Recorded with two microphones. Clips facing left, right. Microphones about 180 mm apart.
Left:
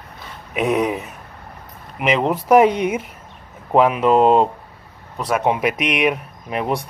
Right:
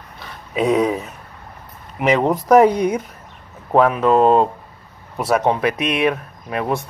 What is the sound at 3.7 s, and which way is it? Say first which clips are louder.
Speech: even; 10° left (ahead or behind).